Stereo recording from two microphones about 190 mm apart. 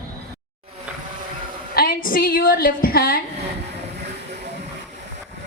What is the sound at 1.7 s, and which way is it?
A woman's voice, 50° left (ahead or behind).